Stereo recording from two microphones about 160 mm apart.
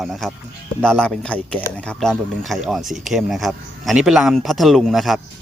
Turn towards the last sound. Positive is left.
turn(degrees=0)  # may be behind; listen again after turning